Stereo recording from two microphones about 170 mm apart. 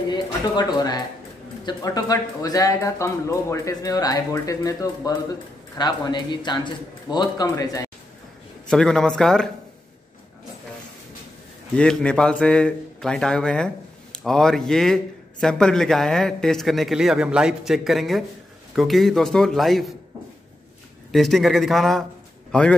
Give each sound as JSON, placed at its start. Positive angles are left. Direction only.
{"t": 0.1, "sound": "speech", "side_deg": 25}
{"t": 8.6, "sound": "a man's voice", "side_deg": 5}
{"t": 11.7, "sound": "a man's voice", "side_deg": 5}
{"t": 21.1, "sound": "a man's voice", "side_deg": 0}